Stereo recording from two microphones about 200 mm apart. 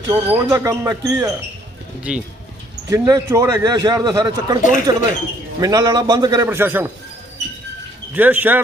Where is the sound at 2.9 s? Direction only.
15° right (ahead or behind).